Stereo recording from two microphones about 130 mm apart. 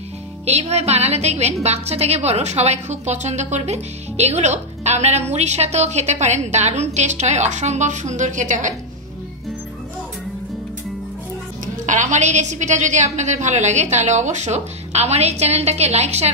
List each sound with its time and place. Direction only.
0.5 s a woman's voice: 55° right (ahead or behind); by 8.6 s 75° right (ahead or behind)
11.6 s a woman's voice: 70° right (ahead or behind)